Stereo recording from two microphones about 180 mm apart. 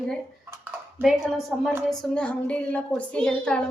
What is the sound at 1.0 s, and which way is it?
A woman's voice, centre (ahead or behind).